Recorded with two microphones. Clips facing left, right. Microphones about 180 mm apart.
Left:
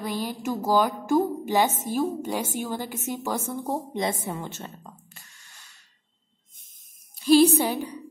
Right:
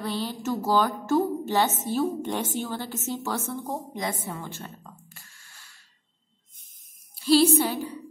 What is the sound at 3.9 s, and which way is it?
A woman's voice, 25° left (ahead or behind).